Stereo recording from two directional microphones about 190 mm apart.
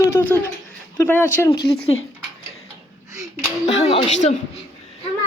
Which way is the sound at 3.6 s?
30° left (ahead or behind).